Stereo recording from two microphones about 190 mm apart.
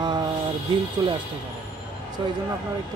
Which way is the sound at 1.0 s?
25° right (ahead or behind).